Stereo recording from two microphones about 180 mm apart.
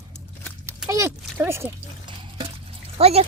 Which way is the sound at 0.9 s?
15° right (ahead or behind).